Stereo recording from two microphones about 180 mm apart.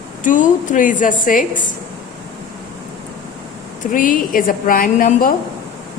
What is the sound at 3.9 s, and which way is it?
A woman's voice, 50° left (ahead or behind).